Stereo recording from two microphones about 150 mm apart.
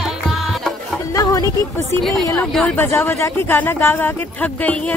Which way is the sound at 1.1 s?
25° left (ahead or behind).